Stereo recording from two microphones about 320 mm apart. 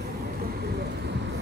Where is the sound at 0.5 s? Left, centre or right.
Right.